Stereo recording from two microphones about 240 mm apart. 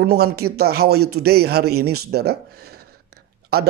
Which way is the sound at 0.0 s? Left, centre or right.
Right.